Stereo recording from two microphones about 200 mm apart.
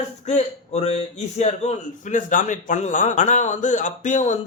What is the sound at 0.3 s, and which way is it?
A man's voice, 35° left (ahead or behind).